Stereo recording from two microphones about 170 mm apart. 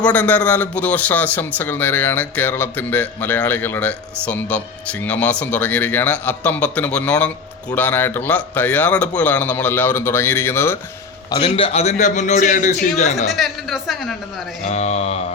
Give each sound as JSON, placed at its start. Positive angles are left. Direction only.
{"t": 0.0, "sound": "a man's voice", "side_deg": 10}
{"t": 11.3, "sound": "a man's voice", "side_deg": 25}
{"t": 13.2, "sound": "a man's voice", "side_deg": 0}
{"t": 14.7, "sound": "mantra", "side_deg": 40}